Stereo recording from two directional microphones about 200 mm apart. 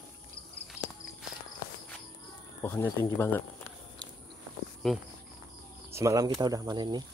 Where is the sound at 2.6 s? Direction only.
10° left (ahead or behind).